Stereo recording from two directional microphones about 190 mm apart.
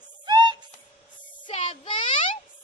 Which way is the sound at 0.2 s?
20° right (ahead or behind).